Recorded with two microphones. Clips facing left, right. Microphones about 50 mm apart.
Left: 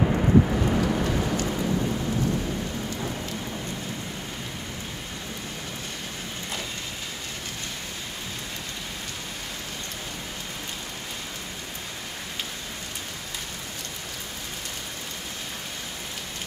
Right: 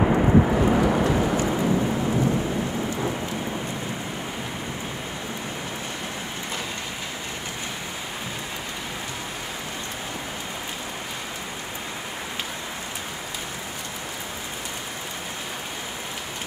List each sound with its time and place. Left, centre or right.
0.0 s vehicle: right